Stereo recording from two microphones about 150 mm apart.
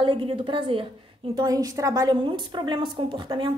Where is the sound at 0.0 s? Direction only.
35° right (ahead or behind).